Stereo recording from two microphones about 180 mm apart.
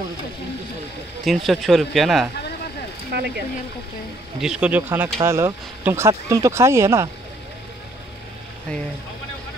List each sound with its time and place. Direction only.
1.2 s speech: centre (ahead or behind)
3.1 s speech: 65° right (ahead or behind)
4.4 s speech: 5° right (ahead or behind)